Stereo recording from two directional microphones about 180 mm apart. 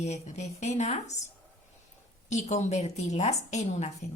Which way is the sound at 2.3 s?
40° left (ahead or behind).